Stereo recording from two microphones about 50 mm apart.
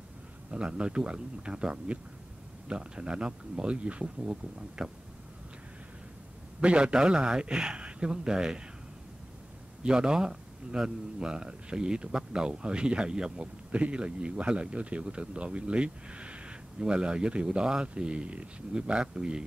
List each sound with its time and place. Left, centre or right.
0.5 s speech: right
6.6 s a man's voice: right
9.8 s speech: centre